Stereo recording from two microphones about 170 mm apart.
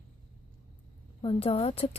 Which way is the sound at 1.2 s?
35° left (ahead or behind).